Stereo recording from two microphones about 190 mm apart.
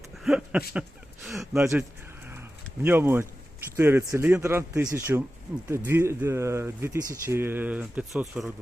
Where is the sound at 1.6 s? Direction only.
10° right (ahead or behind).